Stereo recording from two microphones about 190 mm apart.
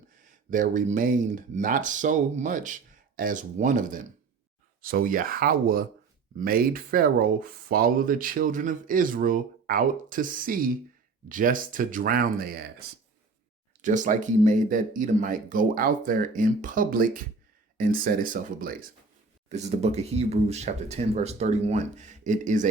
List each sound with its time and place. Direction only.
0.5 s speech: 40° right (ahead or behind)
13.8 s speech: 40° right (ahead or behind)
19.5 s speech: 35° right (ahead or behind)